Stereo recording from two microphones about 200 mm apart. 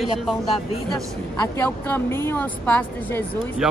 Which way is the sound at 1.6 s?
10° left (ahead or behind).